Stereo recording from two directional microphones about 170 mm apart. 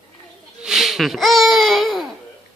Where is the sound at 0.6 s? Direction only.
5° right (ahead or behind).